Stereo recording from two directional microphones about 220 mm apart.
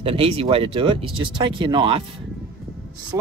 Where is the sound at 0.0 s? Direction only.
25° right (ahead or behind).